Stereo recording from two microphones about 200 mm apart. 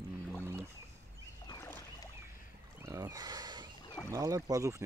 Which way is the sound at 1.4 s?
15° left (ahead or behind).